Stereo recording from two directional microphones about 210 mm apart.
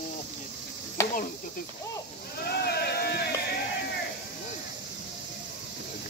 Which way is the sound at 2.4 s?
50° left (ahead or behind).